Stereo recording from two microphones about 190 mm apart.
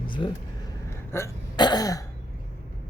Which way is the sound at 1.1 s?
20° left (ahead or behind).